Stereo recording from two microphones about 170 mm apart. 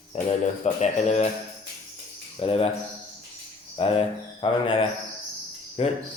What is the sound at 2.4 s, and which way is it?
Speech, 35° left (ahead or behind).